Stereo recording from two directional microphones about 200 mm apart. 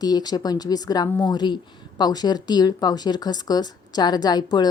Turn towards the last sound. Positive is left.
turn(degrees=20)  # may be behind; listen again after turning